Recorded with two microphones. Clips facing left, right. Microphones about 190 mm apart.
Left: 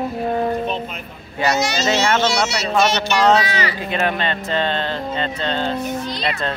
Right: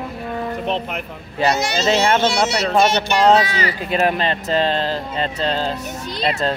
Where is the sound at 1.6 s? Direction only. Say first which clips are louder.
Right 1 dB; 55° right (ahead or behind).